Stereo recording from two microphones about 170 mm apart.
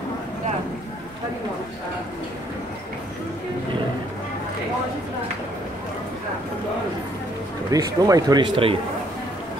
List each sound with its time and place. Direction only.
7.7 s speech: 20° right (ahead or behind)